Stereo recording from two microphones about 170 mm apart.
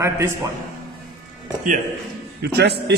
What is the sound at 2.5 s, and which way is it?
Speech, 75° right (ahead or behind).